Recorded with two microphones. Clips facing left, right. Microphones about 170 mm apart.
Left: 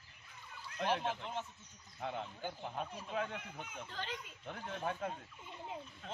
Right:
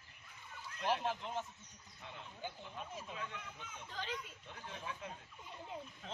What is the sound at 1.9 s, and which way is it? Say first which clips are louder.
Speech: left 9 dB; 65° left (ahead or behind).